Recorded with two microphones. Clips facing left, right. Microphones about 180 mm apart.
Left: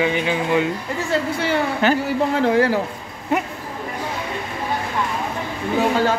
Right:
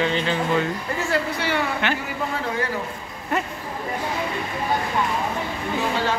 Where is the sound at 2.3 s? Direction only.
80° left.